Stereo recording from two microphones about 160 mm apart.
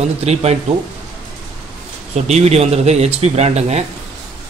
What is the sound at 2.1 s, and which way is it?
Speech, 45° right (ahead or behind).